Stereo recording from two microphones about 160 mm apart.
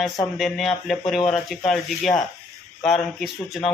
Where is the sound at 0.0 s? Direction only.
Centre (ahead or behind).